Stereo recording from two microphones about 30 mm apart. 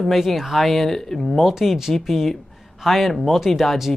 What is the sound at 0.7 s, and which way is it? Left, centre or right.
Speech, centre.